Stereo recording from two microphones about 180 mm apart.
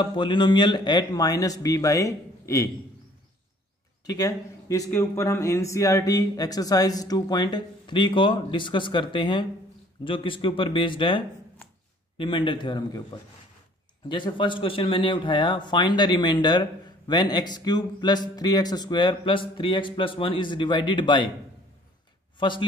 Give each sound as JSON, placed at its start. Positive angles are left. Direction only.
{"t": 0.0, "sound": "speech", "side_deg": 25}
{"t": 4.0, "sound": "speech", "side_deg": 20}
{"t": 14.0, "sound": "speech", "side_deg": 25}
{"t": 22.4, "sound": "speech", "side_deg": 25}